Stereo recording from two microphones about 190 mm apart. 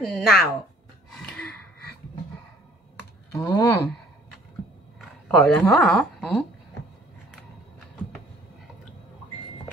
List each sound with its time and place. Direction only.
0.1 s a woman's voice: centre (ahead or behind)
1.1 s gasp: 5° left (ahead or behind)
3.3 s speech: 20° left (ahead or behind)
5.3 s a woman's voice: 5° left (ahead or behind)